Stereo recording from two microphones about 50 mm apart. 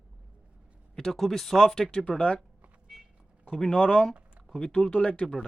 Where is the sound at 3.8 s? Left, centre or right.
Left.